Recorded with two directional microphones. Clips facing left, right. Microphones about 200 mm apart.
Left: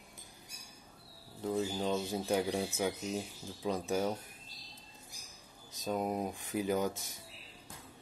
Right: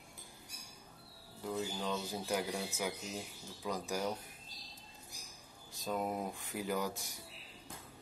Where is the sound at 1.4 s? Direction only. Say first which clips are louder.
Left 5 dB; 25° left (ahead or behind).